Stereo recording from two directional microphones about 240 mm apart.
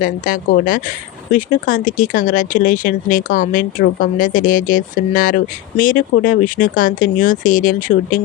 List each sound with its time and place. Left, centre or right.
0.0 s speech: left